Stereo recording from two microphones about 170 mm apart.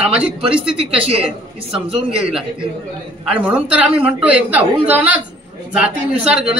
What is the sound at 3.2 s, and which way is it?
A man's voice, 5° right (ahead or behind).